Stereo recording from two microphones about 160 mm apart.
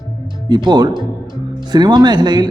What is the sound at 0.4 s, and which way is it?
Speech, 25° right (ahead or behind).